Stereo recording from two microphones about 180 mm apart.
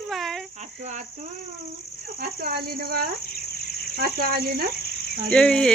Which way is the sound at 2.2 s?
60° right (ahead or behind).